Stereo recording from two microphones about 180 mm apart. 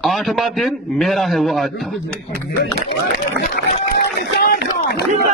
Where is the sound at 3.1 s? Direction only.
65° left (ahead or behind).